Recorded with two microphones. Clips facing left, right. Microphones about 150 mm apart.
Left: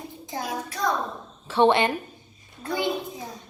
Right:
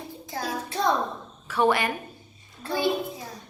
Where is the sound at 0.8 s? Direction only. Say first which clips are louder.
Right 2 dB; 25° right (ahead or behind).